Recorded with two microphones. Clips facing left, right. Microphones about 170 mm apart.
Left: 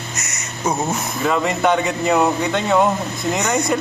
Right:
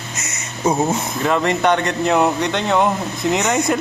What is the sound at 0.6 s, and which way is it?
Speech, 10° right (ahead or behind).